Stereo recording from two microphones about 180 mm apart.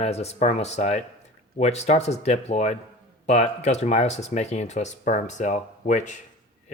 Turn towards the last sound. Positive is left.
turn(degrees=40)  # may be behind; listen again after turning